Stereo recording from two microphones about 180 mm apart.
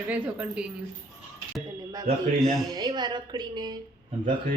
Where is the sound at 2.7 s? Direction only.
25° right (ahead or behind).